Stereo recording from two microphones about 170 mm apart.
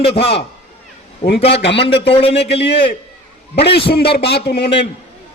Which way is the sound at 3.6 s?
70° left (ahead or behind).